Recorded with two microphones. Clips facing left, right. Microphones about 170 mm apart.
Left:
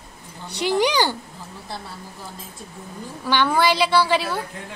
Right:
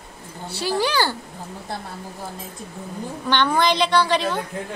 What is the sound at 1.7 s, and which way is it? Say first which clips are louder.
Speech: right 2 dB; 50° right (ahead or behind).